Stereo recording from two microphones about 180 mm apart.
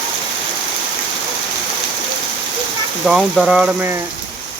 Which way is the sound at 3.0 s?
Centre (ahead or behind).